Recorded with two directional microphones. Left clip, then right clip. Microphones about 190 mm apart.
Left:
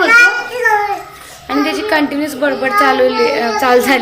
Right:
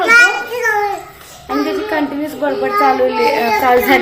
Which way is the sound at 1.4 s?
Centre (ahead or behind).